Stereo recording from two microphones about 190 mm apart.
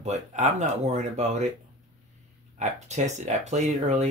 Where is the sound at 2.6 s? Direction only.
40° right (ahead or behind).